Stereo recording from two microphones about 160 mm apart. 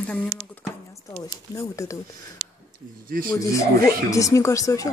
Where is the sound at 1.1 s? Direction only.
20° left (ahead or behind).